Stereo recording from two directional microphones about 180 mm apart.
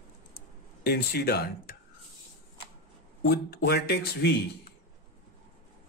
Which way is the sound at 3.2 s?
60° left (ahead or behind).